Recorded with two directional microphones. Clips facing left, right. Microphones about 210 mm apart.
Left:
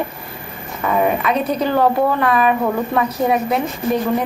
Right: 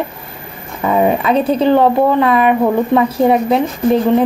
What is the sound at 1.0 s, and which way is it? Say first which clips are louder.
A woman's voice: right 6 dB; 30° right (ahead or behind).